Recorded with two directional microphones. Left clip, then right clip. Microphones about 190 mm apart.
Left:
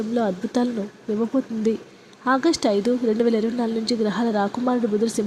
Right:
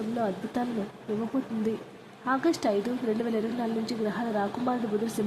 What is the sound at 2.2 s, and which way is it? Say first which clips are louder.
Speech: left 7 dB; 25° left (ahead or behind).